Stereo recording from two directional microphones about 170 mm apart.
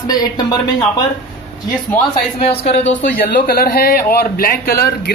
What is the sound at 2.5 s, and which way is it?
Speech, 40° left (ahead or behind).